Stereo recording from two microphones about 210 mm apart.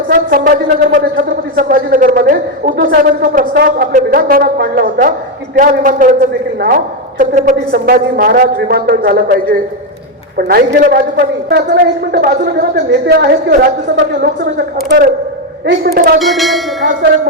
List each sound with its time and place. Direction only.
0.1 s a man's voice: 40° right (ahead or behind)
15.6 s a woman's voice: 50° right (ahead or behind)
16.1 s bell: centre (ahead or behind)